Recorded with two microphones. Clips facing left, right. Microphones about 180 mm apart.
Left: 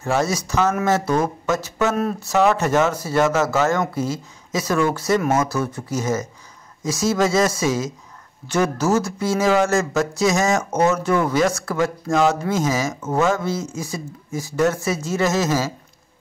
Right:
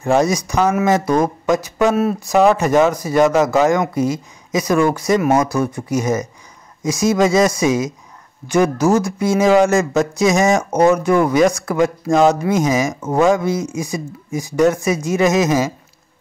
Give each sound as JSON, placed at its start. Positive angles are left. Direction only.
{"t": 0.0, "sound": "speech", "side_deg": -15}